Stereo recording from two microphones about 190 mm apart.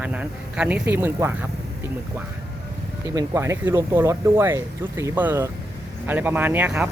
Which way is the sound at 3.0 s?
15° right (ahead or behind).